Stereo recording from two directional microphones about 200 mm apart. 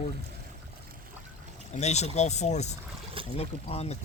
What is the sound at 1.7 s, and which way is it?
Speech, 35° left (ahead or behind).